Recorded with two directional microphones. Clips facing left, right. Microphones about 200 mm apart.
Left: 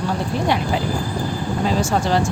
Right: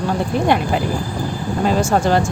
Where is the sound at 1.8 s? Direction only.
55° right (ahead or behind).